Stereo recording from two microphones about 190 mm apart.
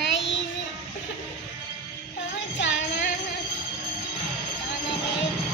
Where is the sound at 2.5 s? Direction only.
70° left (ahead or behind).